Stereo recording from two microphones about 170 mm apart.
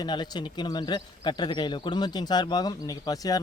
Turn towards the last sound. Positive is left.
turn(degrees=20)  # may be behind; listen again after turning